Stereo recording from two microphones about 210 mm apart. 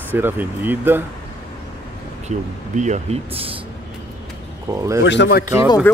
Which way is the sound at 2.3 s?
35° right (ahead or behind).